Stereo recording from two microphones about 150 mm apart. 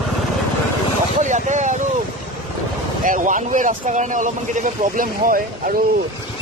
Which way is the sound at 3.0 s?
60° right (ahead or behind).